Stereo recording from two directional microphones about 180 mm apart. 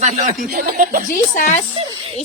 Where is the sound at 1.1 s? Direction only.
45° left (ahead or behind).